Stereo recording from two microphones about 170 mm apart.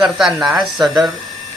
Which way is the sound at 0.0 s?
5° right (ahead or behind).